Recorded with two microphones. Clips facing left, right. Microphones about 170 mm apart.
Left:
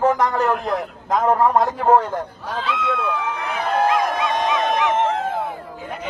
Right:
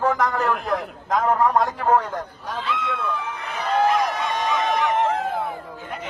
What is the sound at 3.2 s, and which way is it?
Run, 90° left.